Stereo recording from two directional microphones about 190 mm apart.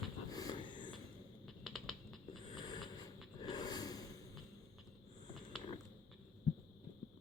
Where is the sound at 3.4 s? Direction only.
20° left (ahead or behind).